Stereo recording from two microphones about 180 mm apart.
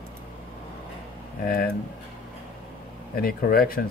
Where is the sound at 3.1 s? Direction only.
55° left (ahead or behind).